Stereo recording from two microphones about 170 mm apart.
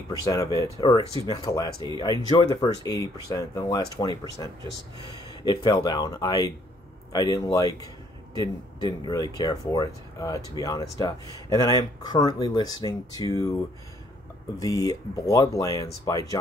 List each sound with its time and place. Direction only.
0.1 s speech: 20° left (ahead or behind)
14.6 s speech: 20° left (ahead or behind)